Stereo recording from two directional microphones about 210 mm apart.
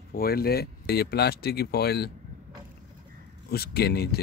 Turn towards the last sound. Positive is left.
turn(degrees=50)  # may be behind; listen again after turning